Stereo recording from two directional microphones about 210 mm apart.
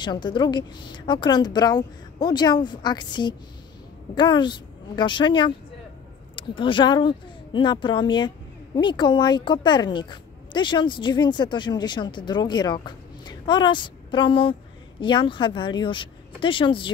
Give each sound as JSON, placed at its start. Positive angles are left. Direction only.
{"t": 0.0, "sound": "speech", "side_deg": 20}